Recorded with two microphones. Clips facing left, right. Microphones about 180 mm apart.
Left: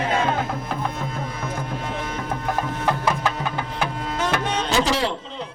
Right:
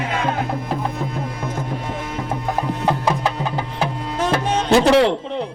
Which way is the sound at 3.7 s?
30° right (ahead or behind).